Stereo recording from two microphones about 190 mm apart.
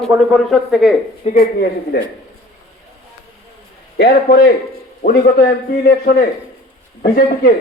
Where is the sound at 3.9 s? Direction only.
55° left (ahead or behind).